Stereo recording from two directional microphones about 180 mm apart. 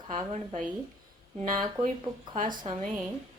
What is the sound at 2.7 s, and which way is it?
Speech, 35° right (ahead or behind).